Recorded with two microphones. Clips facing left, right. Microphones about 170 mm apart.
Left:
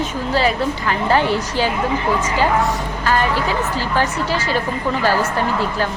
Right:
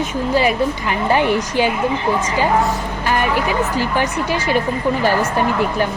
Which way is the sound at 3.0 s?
15° right (ahead or behind).